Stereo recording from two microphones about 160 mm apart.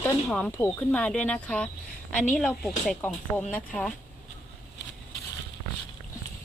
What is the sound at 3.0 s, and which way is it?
Speech, 10° left (ahead or behind).